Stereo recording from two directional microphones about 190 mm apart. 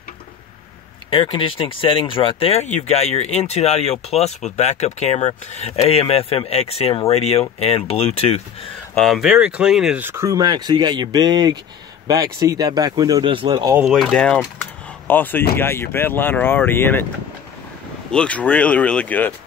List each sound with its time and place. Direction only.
1.1 s speech: 25° left (ahead or behind)
8.9 s speech: centre (ahead or behind); by 13.7 s 25° right (ahead or behind)
13.7 s speech: centre (ahead or behind)
18.1 s speech: 5° left (ahead or behind)